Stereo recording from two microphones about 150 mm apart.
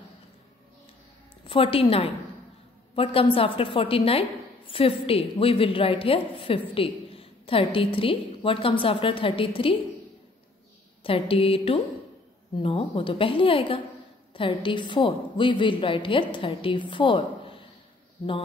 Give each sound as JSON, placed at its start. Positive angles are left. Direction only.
{"t": 1.5, "sound": "a woman's voice", "side_deg": 40}
{"t": 11.1, "sound": "a woman's voice", "side_deg": 40}